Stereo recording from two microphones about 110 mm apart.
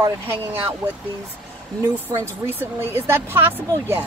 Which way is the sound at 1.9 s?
20° right (ahead or behind).